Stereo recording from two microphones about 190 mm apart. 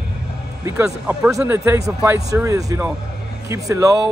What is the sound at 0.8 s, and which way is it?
Speech, 5° right (ahead or behind).